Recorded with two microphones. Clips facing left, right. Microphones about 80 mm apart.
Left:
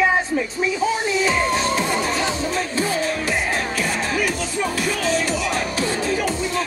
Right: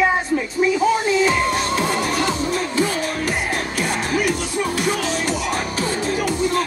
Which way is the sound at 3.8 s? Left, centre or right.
Right.